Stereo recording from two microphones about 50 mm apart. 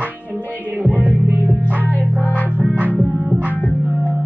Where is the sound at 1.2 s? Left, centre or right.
Right.